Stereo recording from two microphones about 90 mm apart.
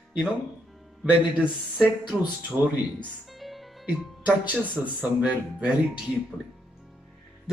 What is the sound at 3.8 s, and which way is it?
Speech, 15° right (ahead or behind).